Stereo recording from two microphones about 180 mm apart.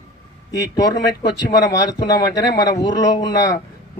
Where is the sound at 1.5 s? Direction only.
20° left (ahead or behind).